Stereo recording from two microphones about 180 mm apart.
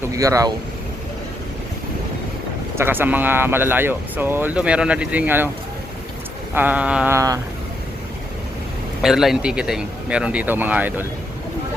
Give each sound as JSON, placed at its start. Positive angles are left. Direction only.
{"t": 0.0, "sound": "speech", "side_deg": -20}
{"t": 2.7, "sound": "speech", "side_deg": -10}
{"t": 6.5, "sound": "speech", "side_deg": -10}
{"t": 9.0, "sound": "speech", "side_deg": 0}